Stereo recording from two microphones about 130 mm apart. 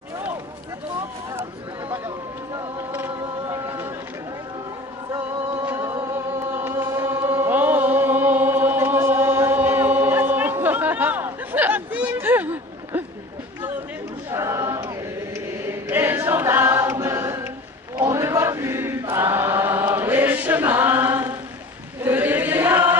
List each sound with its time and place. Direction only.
1.9 s a sound: 20° right (ahead or behind)
5.1 s music: 20° right (ahead or behind)
6.0 s chant: 20° right (ahead or behind)
14.3 s a sound: 25° right (ahead or behind)
15.3 s choir: 15° right (ahead or behind)
17.9 s chant: 20° right (ahead or behind)